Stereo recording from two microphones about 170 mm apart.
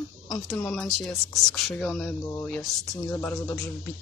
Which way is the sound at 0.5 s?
5° left (ahead or behind).